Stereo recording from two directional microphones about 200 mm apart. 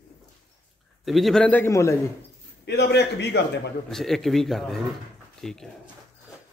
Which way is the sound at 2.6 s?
55° left (ahead or behind).